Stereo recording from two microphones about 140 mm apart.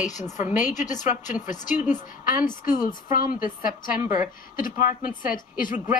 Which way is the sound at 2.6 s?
80° left.